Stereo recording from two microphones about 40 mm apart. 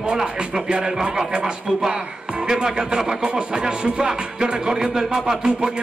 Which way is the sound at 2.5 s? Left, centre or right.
Centre.